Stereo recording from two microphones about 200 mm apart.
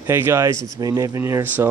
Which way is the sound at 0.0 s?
10° right (ahead or behind).